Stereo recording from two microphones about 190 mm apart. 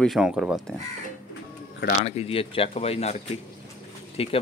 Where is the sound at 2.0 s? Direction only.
30° left (ahead or behind).